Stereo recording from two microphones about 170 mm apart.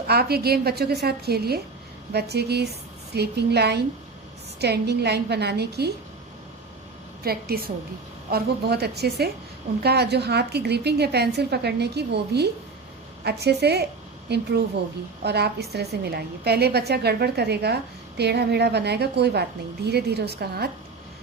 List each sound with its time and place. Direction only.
0.1 s a woman's voice: 65° right (ahead or behind)
7.3 s a woman's voice: 65° right (ahead or behind)